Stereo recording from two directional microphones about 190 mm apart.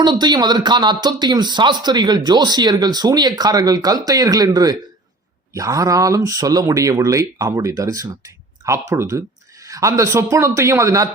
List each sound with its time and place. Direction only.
0.0 s speech: 25° right (ahead or behind)